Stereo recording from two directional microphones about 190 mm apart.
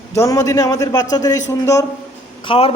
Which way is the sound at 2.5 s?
30° left (ahead or behind).